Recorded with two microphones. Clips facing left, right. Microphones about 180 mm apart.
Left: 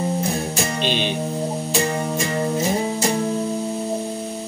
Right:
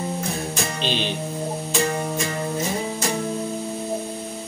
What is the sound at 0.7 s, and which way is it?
Music, 55° left (ahead or behind).